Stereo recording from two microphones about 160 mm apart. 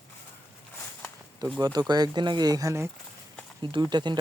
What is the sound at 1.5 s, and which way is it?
Speech, 25° right (ahead or behind).